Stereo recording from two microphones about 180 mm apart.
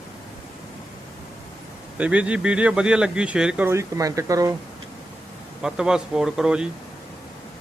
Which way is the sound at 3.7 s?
15° right (ahead or behind).